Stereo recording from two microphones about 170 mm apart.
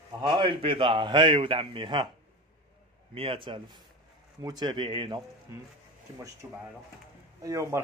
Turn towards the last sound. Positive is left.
turn(degrees=-20)  # may be behind; listen again after turning